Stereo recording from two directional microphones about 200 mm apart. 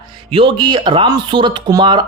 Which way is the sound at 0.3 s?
25° right (ahead or behind).